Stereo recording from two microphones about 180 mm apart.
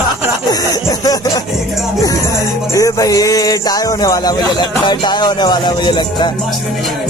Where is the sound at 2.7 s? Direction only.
20° left (ahead or behind).